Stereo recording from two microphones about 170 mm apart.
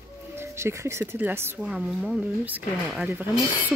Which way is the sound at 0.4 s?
15° right (ahead or behind).